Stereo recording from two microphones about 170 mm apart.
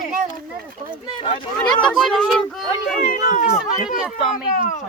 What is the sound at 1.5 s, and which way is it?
Speech, 5° left (ahead or behind).